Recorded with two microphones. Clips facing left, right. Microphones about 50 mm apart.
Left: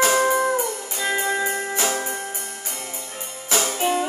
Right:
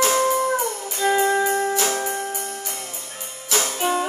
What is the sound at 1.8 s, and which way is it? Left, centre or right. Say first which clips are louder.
Music: right 1 dB; centre.